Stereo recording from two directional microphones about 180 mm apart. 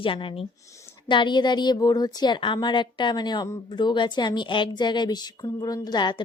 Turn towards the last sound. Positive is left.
turn(degrees=25)  # may be behind; listen again after turning